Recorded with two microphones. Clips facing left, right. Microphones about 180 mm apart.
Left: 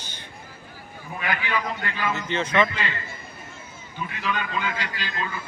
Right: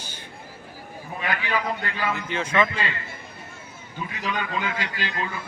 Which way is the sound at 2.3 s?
10° right (ahead or behind).